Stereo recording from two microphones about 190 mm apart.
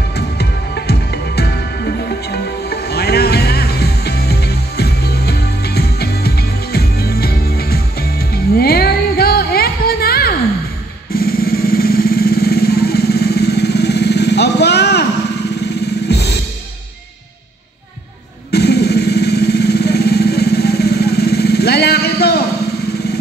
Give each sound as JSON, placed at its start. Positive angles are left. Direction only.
{"t": 0.1, "sound": "music", "side_deg": 60}
{"t": 15.6, "sound": "vehicle", "side_deg": 60}
{"t": 18.5, "sound": "vehicle", "side_deg": 60}